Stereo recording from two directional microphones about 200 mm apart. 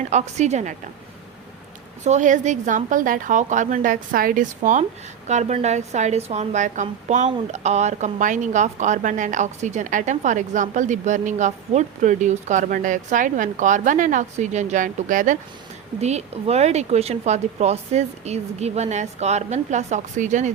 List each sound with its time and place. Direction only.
0.1 s a woman's voice: 35° right (ahead or behind)
2.0 s a woman's voice: 40° right (ahead or behind)